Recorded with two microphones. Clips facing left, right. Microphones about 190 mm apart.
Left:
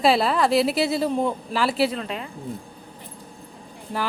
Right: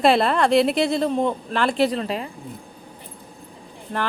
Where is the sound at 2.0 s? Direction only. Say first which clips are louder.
Right 4 dB; 35° right (ahead or behind).